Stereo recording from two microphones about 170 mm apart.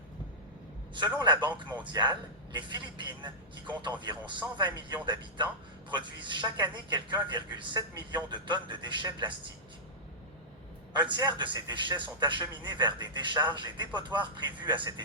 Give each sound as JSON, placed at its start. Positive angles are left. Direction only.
{"t": 1.0, "sound": "a man's voice", "side_deg": -25}
{"t": 10.9, "sound": "a man's voice", "side_deg": -25}